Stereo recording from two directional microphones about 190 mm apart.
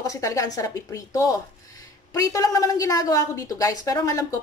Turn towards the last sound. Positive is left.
turn(degrees=15)  # may be behind; listen again after turning